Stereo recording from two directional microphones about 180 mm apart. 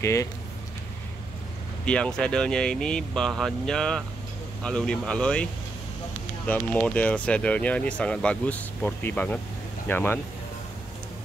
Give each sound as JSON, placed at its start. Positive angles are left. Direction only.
{"t": 0.0, "sound": "speech", "side_deg": 15}
{"t": 1.9, "sound": "speech", "side_deg": 5}